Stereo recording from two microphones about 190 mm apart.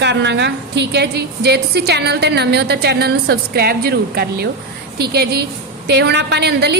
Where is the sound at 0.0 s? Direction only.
65° right (ahead or behind).